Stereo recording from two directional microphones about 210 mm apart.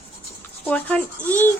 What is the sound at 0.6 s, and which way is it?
Speech, 5° left (ahead or behind).